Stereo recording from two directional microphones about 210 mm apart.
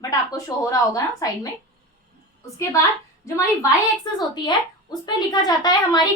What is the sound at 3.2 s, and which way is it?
A woman's voice, 15° left (ahead or behind).